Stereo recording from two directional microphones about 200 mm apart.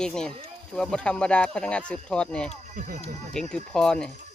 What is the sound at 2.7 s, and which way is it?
Speech, 40° right (ahead or behind).